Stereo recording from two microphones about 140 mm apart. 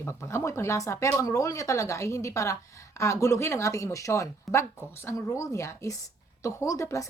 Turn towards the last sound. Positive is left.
turn(degrees=20)  # may be behind; listen again after turning